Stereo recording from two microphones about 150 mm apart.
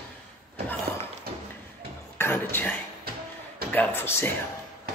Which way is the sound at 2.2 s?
15° left (ahead or behind).